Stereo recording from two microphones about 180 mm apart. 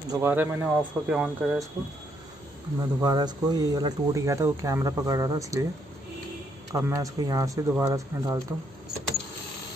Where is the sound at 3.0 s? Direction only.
25° right (ahead or behind).